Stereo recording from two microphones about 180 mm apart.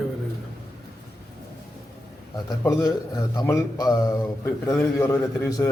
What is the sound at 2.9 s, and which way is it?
A man's voice, 20° left (ahead or behind).